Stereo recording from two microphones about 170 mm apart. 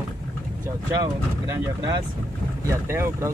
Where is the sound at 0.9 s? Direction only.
20° right (ahead or behind).